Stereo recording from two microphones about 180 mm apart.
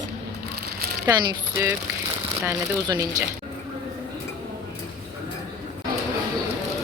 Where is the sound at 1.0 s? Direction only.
15° right (ahead or behind).